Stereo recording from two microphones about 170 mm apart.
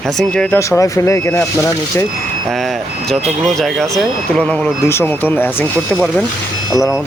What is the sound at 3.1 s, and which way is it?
Speech, centre (ahead or behind).